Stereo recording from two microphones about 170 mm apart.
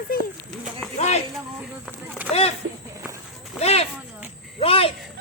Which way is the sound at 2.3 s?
35° left (ahead or behind).